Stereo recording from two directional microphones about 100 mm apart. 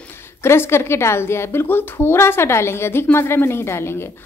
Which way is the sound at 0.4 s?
25° left (ahead or behind).